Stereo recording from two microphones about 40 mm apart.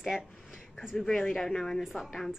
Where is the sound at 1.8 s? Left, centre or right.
Centre.